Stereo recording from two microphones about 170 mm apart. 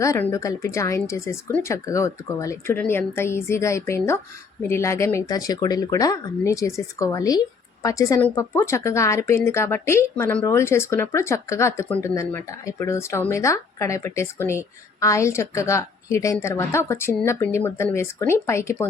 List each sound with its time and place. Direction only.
0.0 s speech: 15° left (ahead or behind)